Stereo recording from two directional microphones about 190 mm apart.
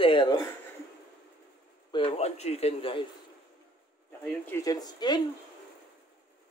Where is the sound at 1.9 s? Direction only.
30° left (ahead or behind).